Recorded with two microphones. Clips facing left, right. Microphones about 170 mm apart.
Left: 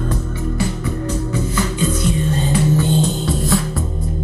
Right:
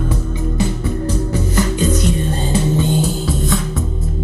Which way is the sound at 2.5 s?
15° right (ahead or behind).